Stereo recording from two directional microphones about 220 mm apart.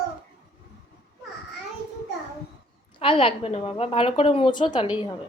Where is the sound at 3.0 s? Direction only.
25° left (ahead or behind).